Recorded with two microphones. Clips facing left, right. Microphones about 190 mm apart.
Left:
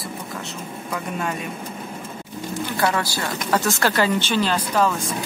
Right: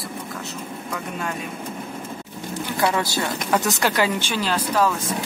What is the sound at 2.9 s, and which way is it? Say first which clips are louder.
Speech: right 1 dB; 20° right (ahead or behind).